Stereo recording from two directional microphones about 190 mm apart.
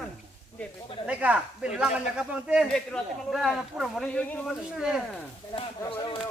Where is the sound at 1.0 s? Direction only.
5° right (ahead or behind).